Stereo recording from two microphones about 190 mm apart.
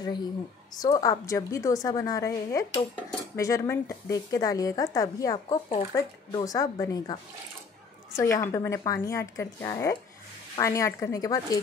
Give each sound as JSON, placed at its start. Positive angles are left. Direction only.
{"t": 0.0, "sound": "a woman's voice", "side_deg": 20}
{"t": 8.2, "sound": "a woman's voice", "side_deg": 15}